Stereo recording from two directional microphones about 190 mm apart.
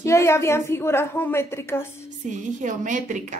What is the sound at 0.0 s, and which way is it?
A woman's voice, 15° left (ahead or behind).